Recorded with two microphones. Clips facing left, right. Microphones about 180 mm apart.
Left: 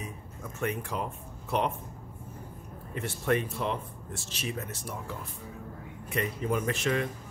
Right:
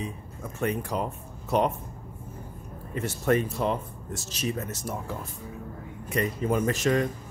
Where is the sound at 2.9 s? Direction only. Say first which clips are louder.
Right 4 dB; 40° right (ahead or behind).